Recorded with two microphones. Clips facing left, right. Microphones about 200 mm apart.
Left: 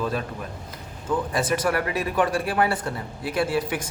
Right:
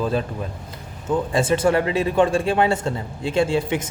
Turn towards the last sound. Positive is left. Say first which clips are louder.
# right 4 dB
turn(degrees=-25)  # may be behind; listen again after turning